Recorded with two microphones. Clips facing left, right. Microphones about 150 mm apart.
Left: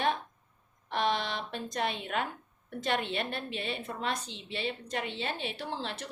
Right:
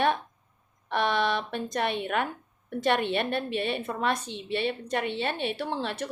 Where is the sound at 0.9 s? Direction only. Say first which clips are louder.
Right 5 dB; 60° right (ahead or behind).